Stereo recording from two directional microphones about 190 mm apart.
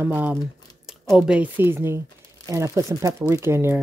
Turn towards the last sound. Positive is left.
turn(degrees=-10)  # may be behind; listen again after turning